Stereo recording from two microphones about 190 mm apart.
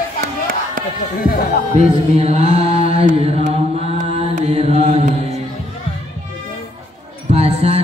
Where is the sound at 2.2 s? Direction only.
35° right (ahead or behind).